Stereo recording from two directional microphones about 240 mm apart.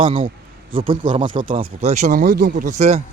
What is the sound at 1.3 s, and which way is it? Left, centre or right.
Speech, right.